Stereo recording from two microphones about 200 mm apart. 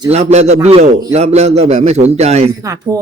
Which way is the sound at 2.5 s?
15° right (ahead or behind).